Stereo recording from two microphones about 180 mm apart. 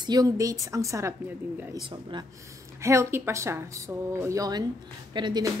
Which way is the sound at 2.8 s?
15° right (ahead or behind).